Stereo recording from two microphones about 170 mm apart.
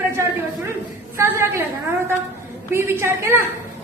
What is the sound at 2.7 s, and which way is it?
Speech, 15° right (ahead or behind).